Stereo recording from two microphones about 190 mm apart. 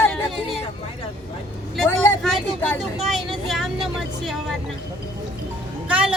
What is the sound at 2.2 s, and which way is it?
Speech, 5° left (ahead or behind).